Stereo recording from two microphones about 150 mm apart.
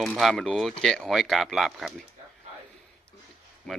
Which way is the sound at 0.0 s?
Centre (ahead or behind).